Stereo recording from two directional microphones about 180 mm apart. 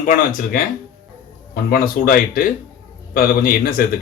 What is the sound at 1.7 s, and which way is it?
A man's voice, 50° left (ahead or behind).